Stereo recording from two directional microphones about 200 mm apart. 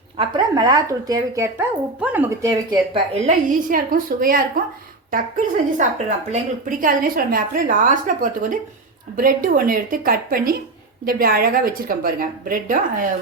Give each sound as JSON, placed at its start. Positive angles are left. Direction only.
{"t": 0.2, "sound": "speech", "side_deg": -20}
{"t": 2.9, "sound": "a woman's voice", "side_deg": -40}
{"t": 5.7, "sound": "a woman's voice", "side_deg": -35}